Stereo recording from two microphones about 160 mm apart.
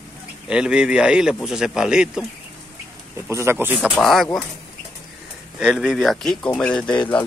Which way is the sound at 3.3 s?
15° right (ahead or behind).